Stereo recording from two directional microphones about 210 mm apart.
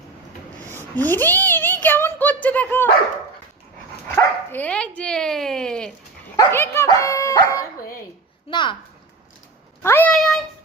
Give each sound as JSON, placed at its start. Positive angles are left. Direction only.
{"t": 0.7, "sound": "speech", "side_deg": 10}
{"t": 4.1, "sound": "a woman's voice", "side_deg": 5}
{"t": 9.8, "sound": "speech", "side_deg": 10}